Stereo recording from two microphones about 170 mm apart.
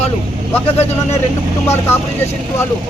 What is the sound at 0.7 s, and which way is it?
Speech, 40° left (ahead or behind).